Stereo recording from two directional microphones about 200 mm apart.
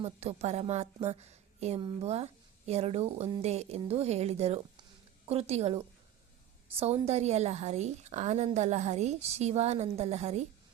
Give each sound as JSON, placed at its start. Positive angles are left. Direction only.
{"t": 0.0, "sound": "a woman's voice", "side_deg": -30}